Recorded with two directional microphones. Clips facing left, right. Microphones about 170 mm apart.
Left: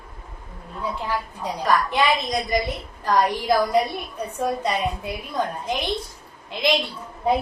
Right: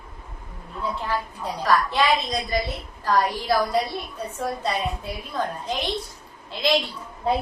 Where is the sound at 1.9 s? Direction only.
15° left (ahead or behind).